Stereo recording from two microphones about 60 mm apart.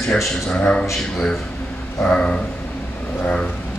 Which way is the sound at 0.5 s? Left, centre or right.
Centre.